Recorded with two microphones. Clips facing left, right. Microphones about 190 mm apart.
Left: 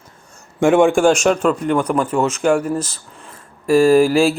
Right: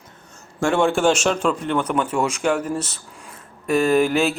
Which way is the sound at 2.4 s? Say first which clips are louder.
Left 5 dB; 10° left (ahead or behind).